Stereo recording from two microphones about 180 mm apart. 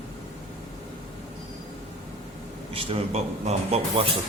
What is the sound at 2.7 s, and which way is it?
Speech, 35° right (ahead or behind).